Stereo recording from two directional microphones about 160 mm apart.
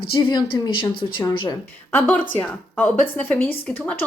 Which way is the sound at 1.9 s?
10° left (ahead or behind).